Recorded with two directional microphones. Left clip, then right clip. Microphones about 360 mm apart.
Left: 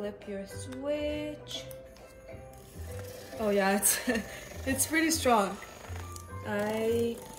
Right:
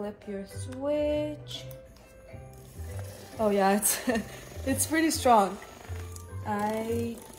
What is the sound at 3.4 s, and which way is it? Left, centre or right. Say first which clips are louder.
A woman's voice: right 3 dB; centre.